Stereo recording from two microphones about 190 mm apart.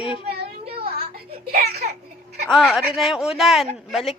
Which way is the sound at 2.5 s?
Centre (ahead or behind).